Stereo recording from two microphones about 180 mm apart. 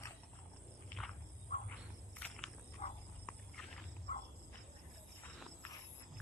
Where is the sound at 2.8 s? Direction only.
40° left (ahead or behind).